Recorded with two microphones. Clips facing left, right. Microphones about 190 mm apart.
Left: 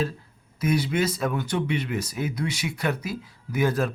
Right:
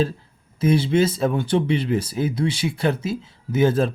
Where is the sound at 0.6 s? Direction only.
25° right (ahead or behind).